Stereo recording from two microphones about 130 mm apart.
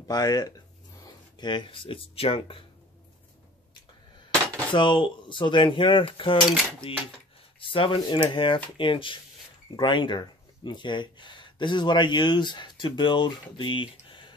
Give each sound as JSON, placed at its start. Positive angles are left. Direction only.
{"t": 0.1, "sound": "speech", "side_deg": 30}
{"t": 4.3, "sound": "a sound", "side_deg": 10}
{"t": 4.7, "sound": "speech", "side_deg": 35}
{"t": 7.6, "sound": "speech", "side_deg": 40}